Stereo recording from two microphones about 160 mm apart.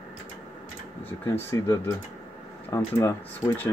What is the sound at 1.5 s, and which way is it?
Speech, 20° left (ahead or behind).